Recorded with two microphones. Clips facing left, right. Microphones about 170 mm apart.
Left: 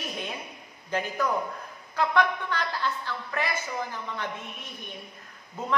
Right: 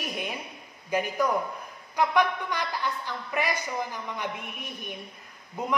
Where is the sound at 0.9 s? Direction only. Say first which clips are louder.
Right 2 dB; 10° right (ahead or behind).